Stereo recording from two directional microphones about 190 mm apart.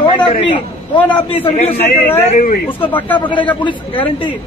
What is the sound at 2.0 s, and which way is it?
Speech, 10° left (ahead or behind).